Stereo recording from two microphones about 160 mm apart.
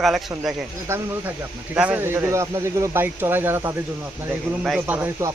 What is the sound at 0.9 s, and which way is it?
Speech, 15° right (ahead or behind).